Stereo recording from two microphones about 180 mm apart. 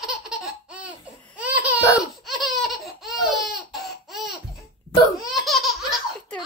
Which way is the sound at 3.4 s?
Centre (ahead or behind).